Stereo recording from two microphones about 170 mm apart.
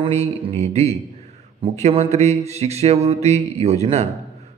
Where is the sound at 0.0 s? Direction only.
35° right (ahead or behind).